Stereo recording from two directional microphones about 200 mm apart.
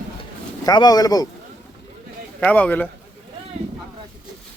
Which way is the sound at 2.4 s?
5° left (ahead or behind).